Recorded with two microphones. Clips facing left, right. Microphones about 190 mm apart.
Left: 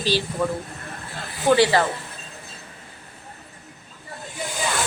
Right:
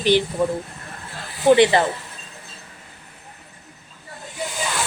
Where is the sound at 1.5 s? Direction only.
20° right (ahead or behind).